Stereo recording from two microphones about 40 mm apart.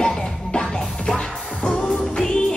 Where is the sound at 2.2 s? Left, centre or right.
Centre.